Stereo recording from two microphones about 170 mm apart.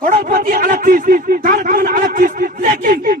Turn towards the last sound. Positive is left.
turn(degrees=-50)  # may be behind; listen again after turning